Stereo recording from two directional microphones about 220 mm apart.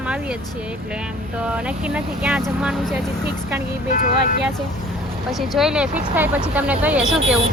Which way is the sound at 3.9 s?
40° left (ahead or behind).